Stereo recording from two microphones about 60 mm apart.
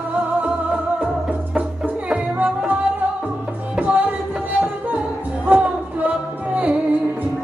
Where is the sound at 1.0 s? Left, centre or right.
Right.